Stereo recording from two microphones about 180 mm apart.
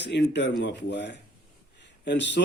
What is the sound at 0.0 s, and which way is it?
A man's voice, 75° left (ahead or behind).